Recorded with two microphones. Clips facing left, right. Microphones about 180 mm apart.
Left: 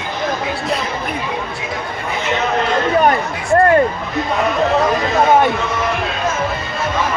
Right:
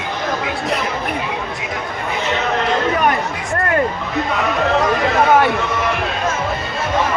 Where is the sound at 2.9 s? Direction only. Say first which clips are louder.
Left 3 dB; 30° left (ahead or behind).